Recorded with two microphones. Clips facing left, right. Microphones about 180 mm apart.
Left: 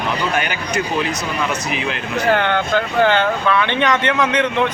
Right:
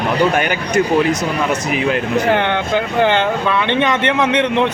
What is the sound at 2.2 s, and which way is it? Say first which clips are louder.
Speech: left 4 dB; 20° right (ahead or behind).